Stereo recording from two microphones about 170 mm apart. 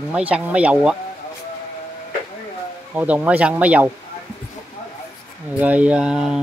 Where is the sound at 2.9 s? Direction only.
10° right (ahead or behind).